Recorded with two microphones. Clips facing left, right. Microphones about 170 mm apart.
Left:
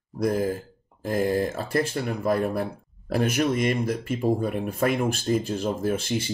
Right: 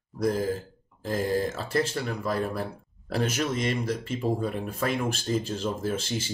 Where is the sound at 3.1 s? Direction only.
50° left (ahead or behind).